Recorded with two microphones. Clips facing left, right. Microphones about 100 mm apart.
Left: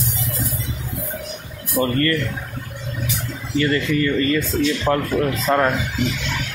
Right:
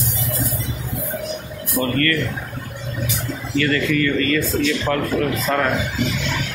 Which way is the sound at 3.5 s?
25° left (ahead or behind).